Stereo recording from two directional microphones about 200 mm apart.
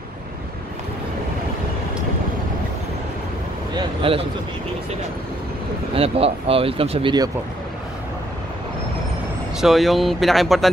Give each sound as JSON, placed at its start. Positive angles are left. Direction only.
{"t": 3.7, "sound": "speech", "side_deg": -25}
{"t": 5.9, "sound": "speech", "side_deg": -30}
{"t": 9.6, "sound": "speech", "side_deg": 0}